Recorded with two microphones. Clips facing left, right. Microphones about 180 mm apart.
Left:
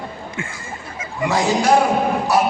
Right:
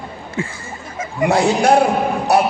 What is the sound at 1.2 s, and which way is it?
Speech, 55° right (ahead or behind).